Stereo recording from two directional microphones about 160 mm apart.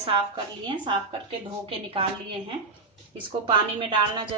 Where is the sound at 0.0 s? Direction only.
35° right (ahead or behind).